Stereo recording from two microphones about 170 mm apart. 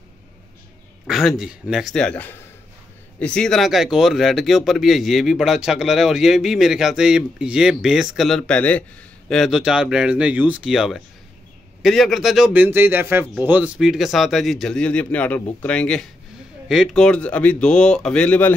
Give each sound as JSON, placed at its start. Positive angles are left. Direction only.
{"t": 1.0, "sound": "a man's voice", "side_deg": 0}